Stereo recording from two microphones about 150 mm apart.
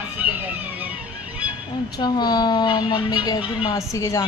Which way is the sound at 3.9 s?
20° left (ahead or behind).